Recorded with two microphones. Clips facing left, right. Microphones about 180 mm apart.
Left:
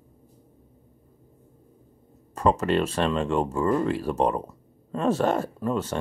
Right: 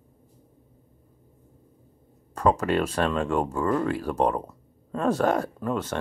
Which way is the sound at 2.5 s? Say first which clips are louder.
Left 2 dB; 5° left (ahead or behind).